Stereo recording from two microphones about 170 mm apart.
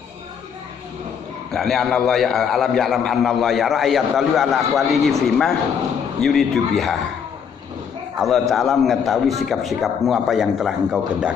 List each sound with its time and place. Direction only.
1.5 s a man's voice: centre (ahead or behind)
8.2 s a man's voice: centre (ahead or behind)